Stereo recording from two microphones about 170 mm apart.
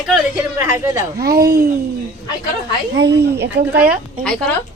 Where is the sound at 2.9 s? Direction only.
75° right (ahead or behind).